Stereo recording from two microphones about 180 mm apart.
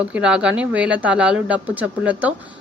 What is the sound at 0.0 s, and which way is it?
A woman's voice, 5° right (ahead or behind).